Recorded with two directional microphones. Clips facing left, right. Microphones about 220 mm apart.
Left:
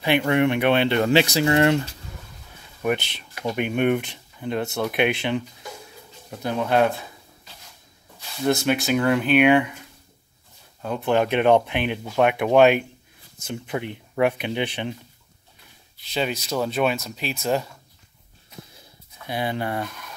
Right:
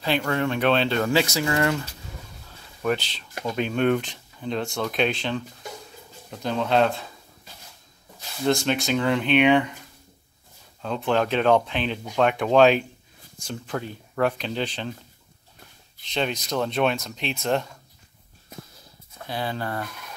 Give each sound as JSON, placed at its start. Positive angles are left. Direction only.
{"t": 0.0, "sound": "speech", "side_deg": 15}
{"t": 2.8, "sound": "speech", "side_deg": 15}
{"t": 8.5, "sound": "speech", "side_deg": 5}
{"t": 10.8, "sound": "speech", "side_deg": 10}
{"t": 14.1, "sound": "speech", "side_deg": 15}
{"t": 16.1, "sound": "speech", "side_deg": 5}
{"t": 19.2, "sound": "speech", "side_deg": 15}